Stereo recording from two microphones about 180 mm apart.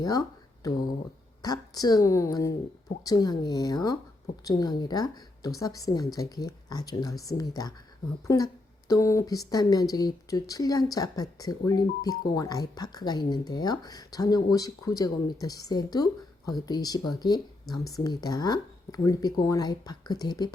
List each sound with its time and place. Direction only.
0.0 s speech: 20° left (ahead or behind)
8.9 s speech: 15° left (ahead or behind)